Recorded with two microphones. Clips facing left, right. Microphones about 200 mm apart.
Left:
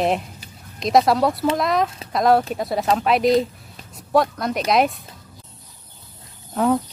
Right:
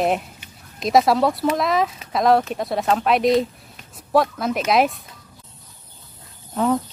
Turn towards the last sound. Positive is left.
turn(degrees=0)  # may be behind; listen again after turning